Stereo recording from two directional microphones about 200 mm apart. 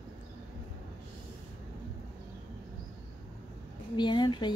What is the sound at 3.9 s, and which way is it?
Speech, 20° left (ahead or behind).